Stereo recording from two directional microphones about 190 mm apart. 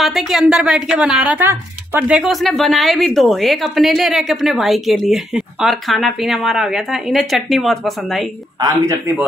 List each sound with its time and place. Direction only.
0.0 s a woman's voice: centre (ahead or behind)
8.5 s speech: 15° right (ahead or behind)